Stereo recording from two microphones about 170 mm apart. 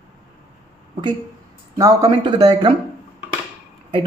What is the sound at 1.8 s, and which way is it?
Speech, 20° right (ahead or behind).